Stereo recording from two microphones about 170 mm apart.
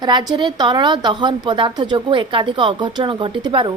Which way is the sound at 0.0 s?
25° right (ahead or behind).